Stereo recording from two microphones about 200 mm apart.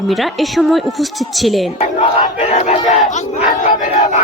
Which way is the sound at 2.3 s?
35° left (ahead or behind).